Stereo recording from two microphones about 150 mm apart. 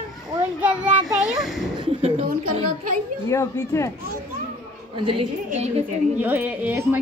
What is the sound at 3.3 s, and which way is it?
Speech, 20° left (ahead or behind).